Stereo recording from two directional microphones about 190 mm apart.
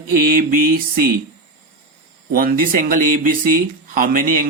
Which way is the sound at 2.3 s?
50° right (ahead or behind).